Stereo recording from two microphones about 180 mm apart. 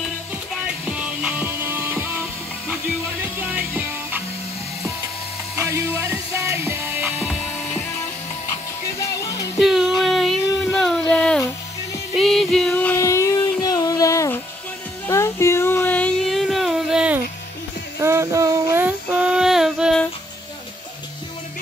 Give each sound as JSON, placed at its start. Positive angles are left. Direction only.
{"t": 0.7, "sound": "music", "side_deg": -5}
{"t": 3.3, "sound": "music", "side_deg": -10}
{"t": 5.6, "sound": "music", "side_deg": -15}
{"t": 7.6, "sound": "music", "side_deg": 5}
{"t": 9.0, "sound": "music", "side_deg": 15}
{"t": 9.6, "sound": "a sound", "side_deg": 0}
{"t": 18.0, "sound": "female singing", "side_deg": -15}